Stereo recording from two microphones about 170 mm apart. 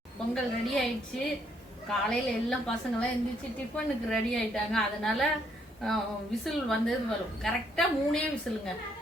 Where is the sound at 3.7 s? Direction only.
Centre (ahead or behind).